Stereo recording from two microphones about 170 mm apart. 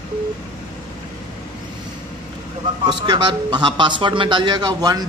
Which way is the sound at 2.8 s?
25° right (ahead or behind).